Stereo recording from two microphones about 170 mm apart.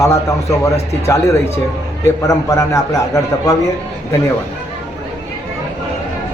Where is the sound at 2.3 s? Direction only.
20° left (ahead or behind).